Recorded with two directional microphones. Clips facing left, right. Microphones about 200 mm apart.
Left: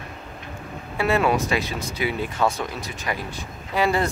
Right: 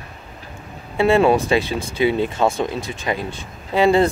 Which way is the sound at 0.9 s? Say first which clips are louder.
Right 6 dB; 25° right (ahead or behind).